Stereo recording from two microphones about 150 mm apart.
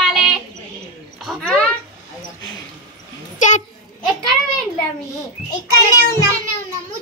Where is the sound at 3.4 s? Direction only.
60° left (ahead or behind).